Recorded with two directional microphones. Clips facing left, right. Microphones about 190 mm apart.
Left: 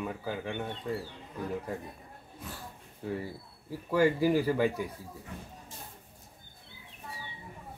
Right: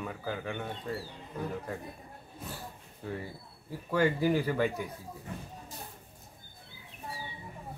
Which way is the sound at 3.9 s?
5° left (ahead or behind).